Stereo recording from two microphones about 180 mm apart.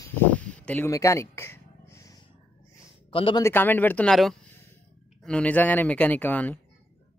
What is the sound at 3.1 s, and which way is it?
Speech, 30° left (ahead or behind).